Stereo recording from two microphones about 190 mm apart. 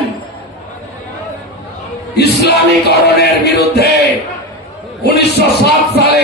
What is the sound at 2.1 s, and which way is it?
Music, 60° left (ahead or behind).